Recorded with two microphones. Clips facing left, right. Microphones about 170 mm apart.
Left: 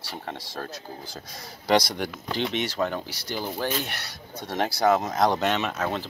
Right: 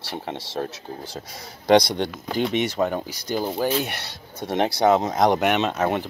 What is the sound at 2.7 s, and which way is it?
Speech, 20° right (ahead or behind).